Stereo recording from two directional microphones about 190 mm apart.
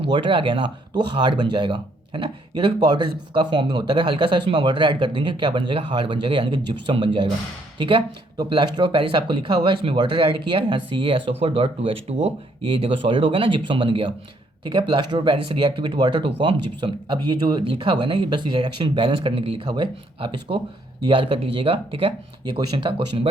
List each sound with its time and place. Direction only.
0.1 s speech: 25° right (ahead or behind)
8.4 s speech: 25° right (ahead or behind)